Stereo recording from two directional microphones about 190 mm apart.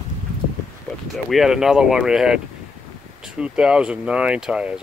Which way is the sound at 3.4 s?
5° right (ahead or behind).